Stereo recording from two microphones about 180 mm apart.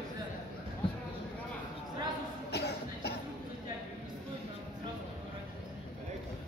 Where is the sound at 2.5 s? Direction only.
65° left (ahead or behind).